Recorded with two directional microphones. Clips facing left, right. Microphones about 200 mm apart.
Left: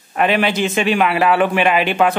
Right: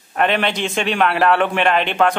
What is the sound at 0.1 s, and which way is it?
A man's voice, 5° left (ahead or behind).